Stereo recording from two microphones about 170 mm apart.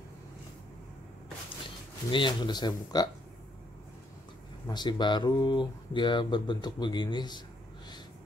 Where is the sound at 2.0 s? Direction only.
30° left (ahead or behind).